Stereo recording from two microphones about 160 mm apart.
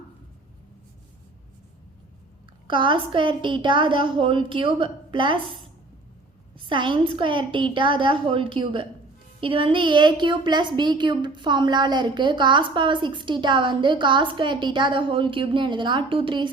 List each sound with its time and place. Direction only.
2.6 s a woman's voice: 30° right (ahead or behind)
6.7 s a woman's voice: 30° right (ahead or behind)